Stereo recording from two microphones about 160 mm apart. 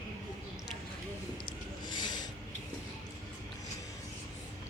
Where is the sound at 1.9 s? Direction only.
30° left (ahead or behind).